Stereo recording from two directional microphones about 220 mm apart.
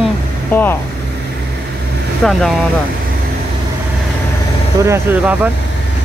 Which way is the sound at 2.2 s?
Centre (ahead or behind).